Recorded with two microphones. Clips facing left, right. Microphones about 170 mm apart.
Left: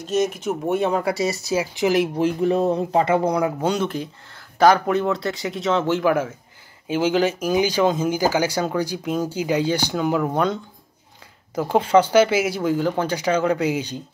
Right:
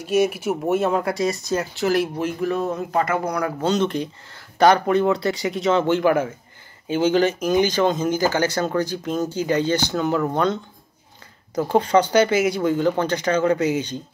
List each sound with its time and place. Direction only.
0.0 s speech: 10° right (ahead or behind); by 2.0 s 15° left (ahead or behind)
2.1 s speech: 30° left (ahead or behind)
3.6 s speech: 5° left (ahead or behind)